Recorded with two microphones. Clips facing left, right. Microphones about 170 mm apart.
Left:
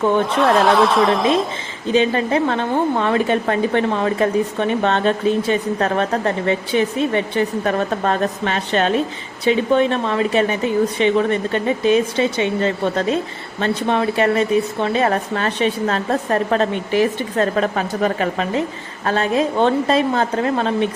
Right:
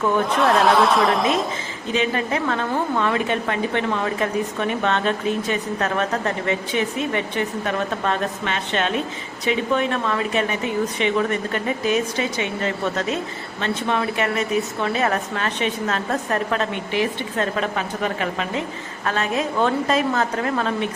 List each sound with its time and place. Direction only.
0.4 s speech: centre (ahead or behind)
1.9 s a woman's voice: 30° left (ahead or behind)